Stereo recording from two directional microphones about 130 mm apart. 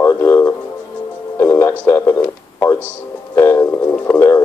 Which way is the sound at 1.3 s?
20° left (ahead or behind).